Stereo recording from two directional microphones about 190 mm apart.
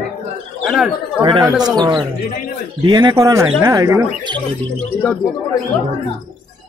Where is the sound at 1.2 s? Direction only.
25° right (ahead or behind).